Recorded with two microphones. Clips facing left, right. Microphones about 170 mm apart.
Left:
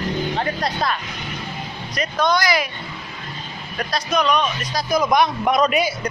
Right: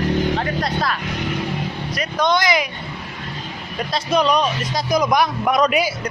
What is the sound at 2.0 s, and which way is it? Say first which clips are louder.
Speech: even; 20° right (ahead or behind).